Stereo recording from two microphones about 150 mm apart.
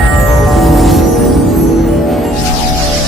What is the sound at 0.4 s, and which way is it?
Music, centre (ahead or behind).